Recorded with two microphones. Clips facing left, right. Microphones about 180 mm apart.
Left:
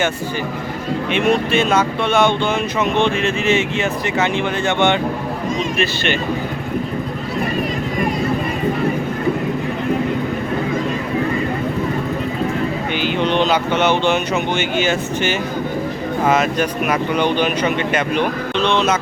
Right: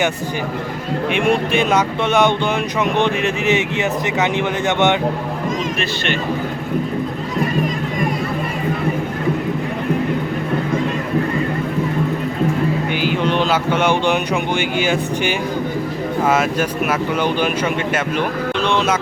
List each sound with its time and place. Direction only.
1.1 s speech: 15° right (ahead or behind)
13.0 s speech: 5° right (ahead or behind)